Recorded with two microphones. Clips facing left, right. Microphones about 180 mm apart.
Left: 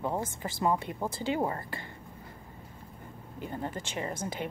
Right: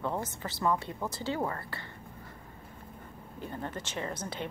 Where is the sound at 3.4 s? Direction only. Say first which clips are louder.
Left 2 dB; 15° left (ahead or behind).